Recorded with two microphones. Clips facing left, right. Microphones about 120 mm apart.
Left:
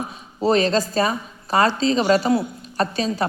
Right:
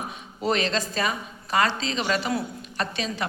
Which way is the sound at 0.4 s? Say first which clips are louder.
Left 7 dB; 35° left (ahead or behind).